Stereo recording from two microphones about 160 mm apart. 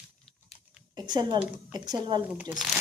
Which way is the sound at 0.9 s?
25° right (ahead or behind).